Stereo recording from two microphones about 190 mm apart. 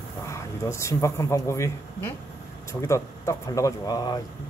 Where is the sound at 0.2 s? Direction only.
15° left (ahead or behind).